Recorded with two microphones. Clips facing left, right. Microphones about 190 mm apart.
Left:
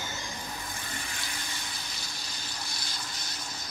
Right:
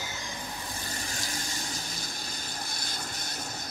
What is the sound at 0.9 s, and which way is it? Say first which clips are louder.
Vehicle: right 3 dB; 40° right (ahead or behind).